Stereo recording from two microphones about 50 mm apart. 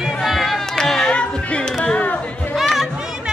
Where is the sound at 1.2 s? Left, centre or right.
Left.